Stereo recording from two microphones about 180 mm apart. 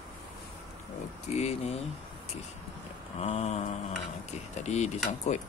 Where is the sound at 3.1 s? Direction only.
35° left (ahead or behind).